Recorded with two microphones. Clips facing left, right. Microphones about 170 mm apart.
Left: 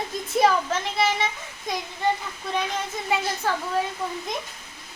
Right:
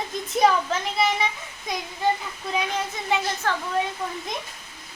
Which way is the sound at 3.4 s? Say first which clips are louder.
Left 1 dB; 10° left (ahead or behind).